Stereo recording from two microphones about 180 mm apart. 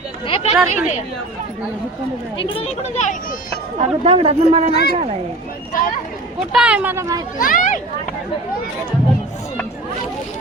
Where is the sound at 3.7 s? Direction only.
35° right (ahead or behind).